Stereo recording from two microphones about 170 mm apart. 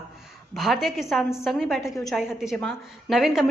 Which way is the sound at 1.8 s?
20° left (ahead or behind).